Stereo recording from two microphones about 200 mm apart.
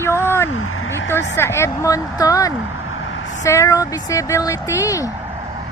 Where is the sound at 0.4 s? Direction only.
90° left.